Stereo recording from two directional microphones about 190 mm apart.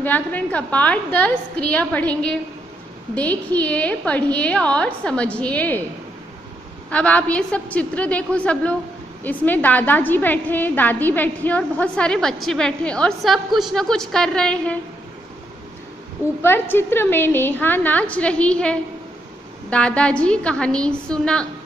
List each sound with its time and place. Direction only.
0.0 s a woman's voice: 10° left (ahead or behind)
6.9 s a woman's voice: 5° left (ahead or behind)
16.4 s a woman's voice: 10° left (ahead or behind)